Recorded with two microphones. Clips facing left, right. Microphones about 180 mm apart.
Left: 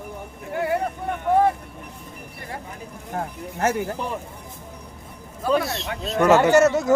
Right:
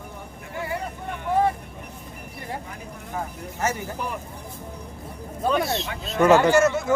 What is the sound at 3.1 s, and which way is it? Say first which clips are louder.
Speech: left 3 dB; 55° left (ahead or behind).